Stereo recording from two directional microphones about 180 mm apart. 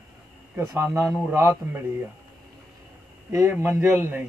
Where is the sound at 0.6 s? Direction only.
15° right (ahead or behind).